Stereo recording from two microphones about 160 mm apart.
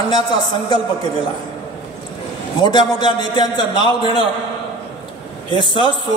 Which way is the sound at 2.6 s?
30° left (ahead or behind).